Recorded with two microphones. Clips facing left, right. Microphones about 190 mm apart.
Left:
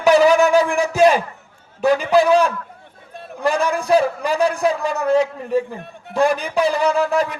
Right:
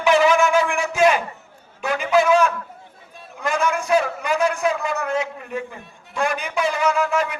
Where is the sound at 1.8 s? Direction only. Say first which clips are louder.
Left 4 dB; 35° left (ahead or behind).